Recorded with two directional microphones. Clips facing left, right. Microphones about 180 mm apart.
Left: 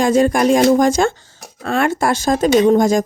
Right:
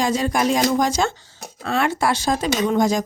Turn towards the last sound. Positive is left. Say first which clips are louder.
# left 7 dB
turn(degrees=50)  # may be behind; listen again after turning